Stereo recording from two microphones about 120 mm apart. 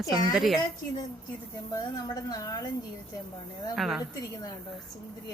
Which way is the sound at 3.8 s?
Centre (ahead or behind).